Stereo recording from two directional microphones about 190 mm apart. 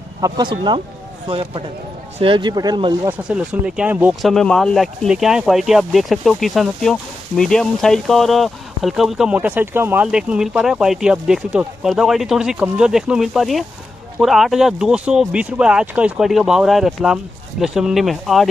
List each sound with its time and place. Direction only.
0.2 s speech: 25° right (ahead or behind)
3.1 s speech: 5° right (ahead or behind)